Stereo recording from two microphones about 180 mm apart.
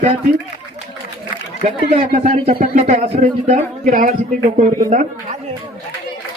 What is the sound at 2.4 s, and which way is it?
Speech, 35° right (ahead or behind).